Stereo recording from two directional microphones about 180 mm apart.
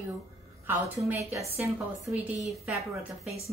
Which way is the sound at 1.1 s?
15° right (ahead or behind).